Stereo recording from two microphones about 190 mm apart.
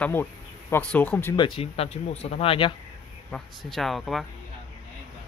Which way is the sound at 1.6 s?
30° left (ahead or behind).